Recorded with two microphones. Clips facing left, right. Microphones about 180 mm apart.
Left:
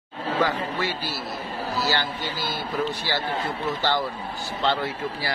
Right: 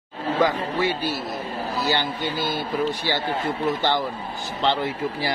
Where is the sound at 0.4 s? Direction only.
15° right (ahead or behind).